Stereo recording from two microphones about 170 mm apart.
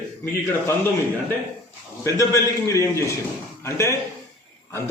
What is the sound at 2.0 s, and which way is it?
A man's voice, 20° left (ahead or behind).